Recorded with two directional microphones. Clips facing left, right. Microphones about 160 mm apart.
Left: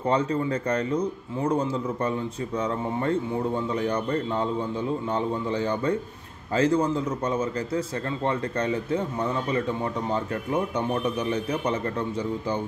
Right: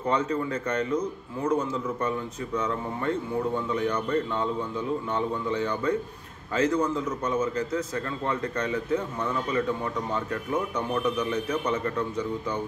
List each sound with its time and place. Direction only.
0.1 s a man's voice: 35° left (ahead or behind)